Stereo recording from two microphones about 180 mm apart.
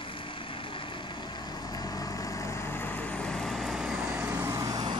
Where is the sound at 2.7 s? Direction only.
10° left (ahead or behind).